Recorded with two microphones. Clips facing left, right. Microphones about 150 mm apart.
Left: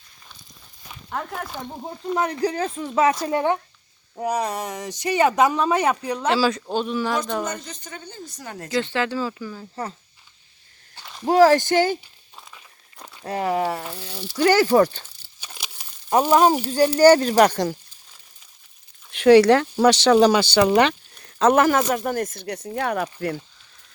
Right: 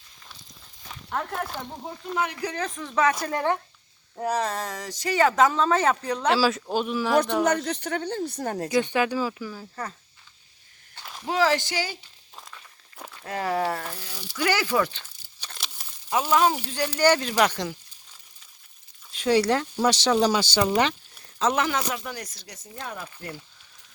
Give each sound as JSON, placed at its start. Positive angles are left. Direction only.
{"t": 0.8, "sound": "a sound", "side_deg": 5}
{"t": 2.1, "sound": "speech", "side_deg": 35}
{"t": 7.4, "sound": "speech", "side_deg": -70}
{"t": 8.7, "sound": "speech", "side_deg": -15}
{"t": 11.3, "sound": "speech", "side_deg": 45}
{"t": 12.4, "sound": "walk", "side_deg": 5}
{"t": 13.2, "sound": "speech", "side_deg": 25}
{"t": 14.3, "sound": "speech", "side_deg": 40}
{"t": 15.4, "sound": "a sound", "side_deg": 5}
{"t": 16.0, "sound": "speech", "side_deg": 45}
{"t": 19.1, "sound": "speech", "side_deg": 65}
{"t": 21.3, "sound": "speech", "side_deg": 55}